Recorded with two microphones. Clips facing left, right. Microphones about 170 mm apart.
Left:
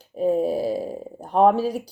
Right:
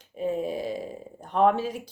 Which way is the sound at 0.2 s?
40° left (ahead or behind).